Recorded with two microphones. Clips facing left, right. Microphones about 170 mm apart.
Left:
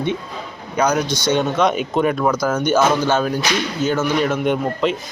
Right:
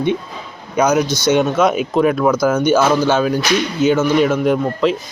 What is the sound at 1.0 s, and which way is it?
Speech, 15° left (ahead or behind).